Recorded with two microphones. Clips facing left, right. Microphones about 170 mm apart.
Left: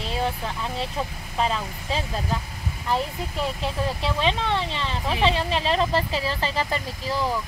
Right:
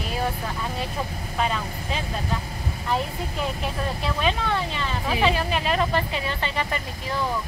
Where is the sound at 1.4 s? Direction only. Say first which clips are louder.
Left 1 dB; 30° left (ahead or behind).